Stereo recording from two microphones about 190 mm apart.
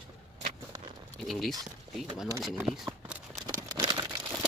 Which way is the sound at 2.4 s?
Centre (ahead or behind).